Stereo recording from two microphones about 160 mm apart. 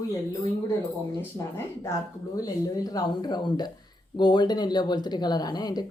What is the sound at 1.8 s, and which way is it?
A woman's voice, 20° left (ahead or behind).